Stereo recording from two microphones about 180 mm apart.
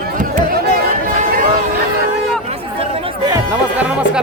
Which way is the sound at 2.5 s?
30° right (ahead or behind).